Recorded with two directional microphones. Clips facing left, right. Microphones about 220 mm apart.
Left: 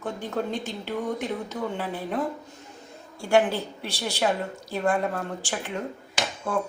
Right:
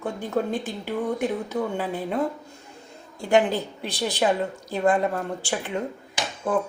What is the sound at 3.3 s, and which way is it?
Speech, 15° right (ahead or behind).